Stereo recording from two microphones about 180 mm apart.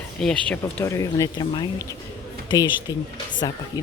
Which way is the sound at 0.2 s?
5° left (ahead or behind).